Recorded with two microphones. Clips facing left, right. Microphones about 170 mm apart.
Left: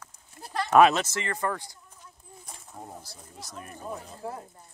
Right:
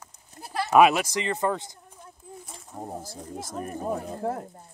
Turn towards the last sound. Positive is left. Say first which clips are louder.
# right 8 dB
turn(degrees=-55)  # may be behind; listen again after turning